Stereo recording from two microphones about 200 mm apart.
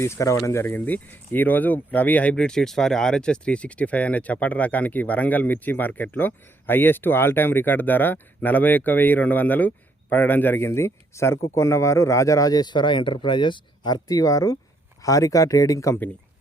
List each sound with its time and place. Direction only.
0.0 s speech: 15° left (ahead or behind)